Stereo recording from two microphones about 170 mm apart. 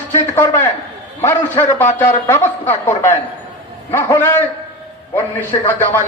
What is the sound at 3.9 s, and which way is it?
Speech, 15° left (ahead or behind).